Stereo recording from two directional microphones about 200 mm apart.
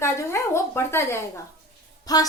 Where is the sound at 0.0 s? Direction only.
15° left (ahead or behind).